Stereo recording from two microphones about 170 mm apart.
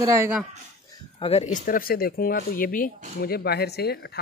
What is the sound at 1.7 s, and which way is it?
Speech, 60° left (ahead or behind).